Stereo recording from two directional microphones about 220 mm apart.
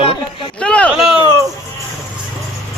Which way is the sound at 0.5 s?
5° left (ahead or behind).